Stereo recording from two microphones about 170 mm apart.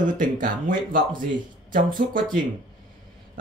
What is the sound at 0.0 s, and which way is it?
Speech, 50° right (ahead or behind).